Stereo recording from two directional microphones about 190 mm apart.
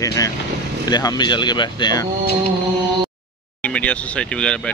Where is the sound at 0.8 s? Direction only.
20° left (ahead or behind).